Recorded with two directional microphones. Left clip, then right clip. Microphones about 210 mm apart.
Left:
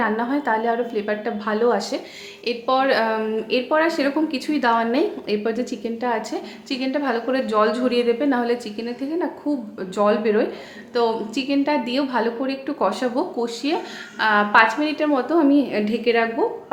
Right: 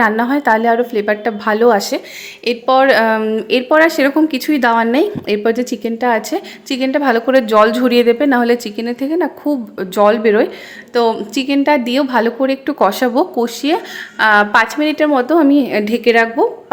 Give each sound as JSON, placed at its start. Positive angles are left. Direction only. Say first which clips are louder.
{"t": 0.0, "sound": "a woman's voice", "louder": "right 9 dB", "side_deg": -40}